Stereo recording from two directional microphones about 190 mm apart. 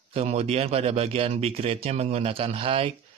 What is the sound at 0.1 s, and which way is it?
Speech, 35° right (ahead or behind).